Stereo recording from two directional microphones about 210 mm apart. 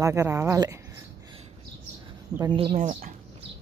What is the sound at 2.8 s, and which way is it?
Speech, 35° right (ahead or behind).